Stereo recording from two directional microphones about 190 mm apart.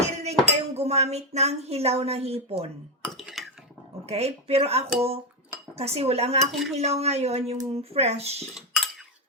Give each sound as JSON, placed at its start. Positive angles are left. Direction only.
{"t": 0.0, "sound": "cutlery", "side_deg": -35}
{"t": 0.8, "sound": "a woman's voice", "side_deg": -35}
{"t": 3.0, "sound": "dishes", "side_deg": 0}
{"t": 4.0, "sound": "a woman's voice", "side_deg": -35}
{"t": 6.5, "sound": "speech", "side_deg": 0}
{"t": 6.7, "sound": "a woman's voice", "side_deg": -35}
{"t": 8.5, "sound": "cutlery", "side_deg": 0}